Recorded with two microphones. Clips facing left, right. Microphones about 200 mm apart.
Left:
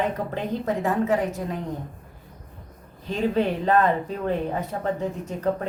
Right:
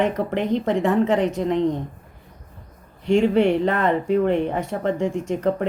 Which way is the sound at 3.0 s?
85° right.